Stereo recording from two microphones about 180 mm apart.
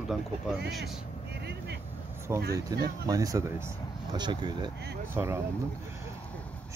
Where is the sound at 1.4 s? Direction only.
65° right (ahead or behind).